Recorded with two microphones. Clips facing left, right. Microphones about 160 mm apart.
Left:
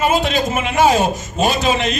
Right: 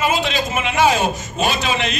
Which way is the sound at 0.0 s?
50° left (ahead or behind).